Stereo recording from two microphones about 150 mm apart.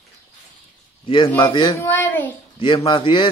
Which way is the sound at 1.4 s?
30° left (ahead or behind).